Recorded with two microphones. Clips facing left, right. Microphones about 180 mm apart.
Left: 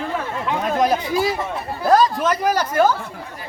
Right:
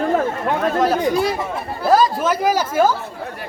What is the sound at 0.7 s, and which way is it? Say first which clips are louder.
Speech: left 1 dB; 15° left (ahead or behind).